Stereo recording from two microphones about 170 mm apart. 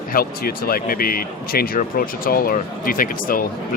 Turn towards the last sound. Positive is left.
turn(degrees=55)  # may be behind; listen again after turning